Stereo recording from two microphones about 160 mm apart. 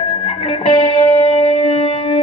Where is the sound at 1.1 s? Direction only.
40° left (ahead or behind).